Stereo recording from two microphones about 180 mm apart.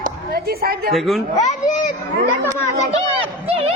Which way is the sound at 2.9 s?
35° right (ahead or behind).